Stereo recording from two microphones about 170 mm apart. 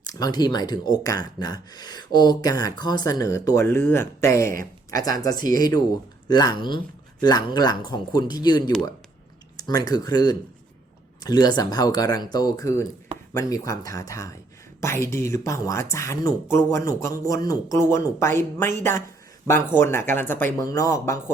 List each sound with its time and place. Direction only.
0.0 s speech: 20° left (ahead or behind)
5.3 s speech: 55° right (ahead or behind)
5.5 s speech: 20° left (ahead or behind)